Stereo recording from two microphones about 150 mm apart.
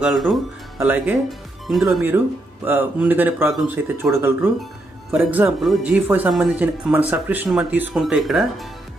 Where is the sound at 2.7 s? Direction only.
15° right (ahead or behind).